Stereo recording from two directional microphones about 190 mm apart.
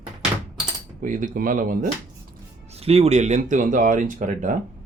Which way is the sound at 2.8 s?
35° right (ahead or behind).